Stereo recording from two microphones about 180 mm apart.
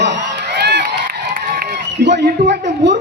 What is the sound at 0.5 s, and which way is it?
Crowd, 65° right (ahead or behind).